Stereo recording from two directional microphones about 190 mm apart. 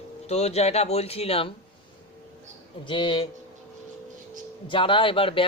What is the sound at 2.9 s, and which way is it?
Speech, 25° left (ahead or behind).